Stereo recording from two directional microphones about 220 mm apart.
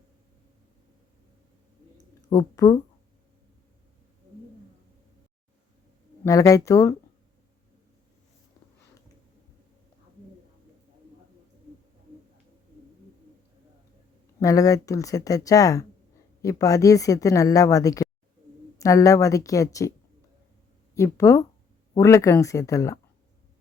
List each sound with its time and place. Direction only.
2.3 s a woman's voice: 15° left (ahead or behind)
6.2 s a woman's voice: 15° left (ahead or behind)
14.3 s a woman's voice: 15° left (ahead or behind)
20.9 s a woman's voice: 15° left (ahead or behind)